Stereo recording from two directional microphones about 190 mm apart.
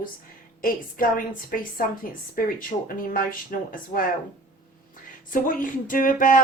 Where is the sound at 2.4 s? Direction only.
50° left (ahead or behind).